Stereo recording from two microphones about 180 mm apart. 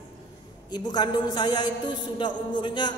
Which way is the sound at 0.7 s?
25° left (ahead or behind).